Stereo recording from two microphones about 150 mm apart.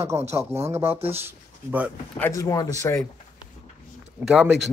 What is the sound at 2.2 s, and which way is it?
Speech, 25° left (ahead or behind).